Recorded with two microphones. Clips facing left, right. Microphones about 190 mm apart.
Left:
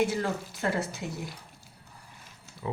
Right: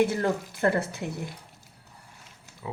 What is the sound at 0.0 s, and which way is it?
Speech, 55° right (ahead or behind).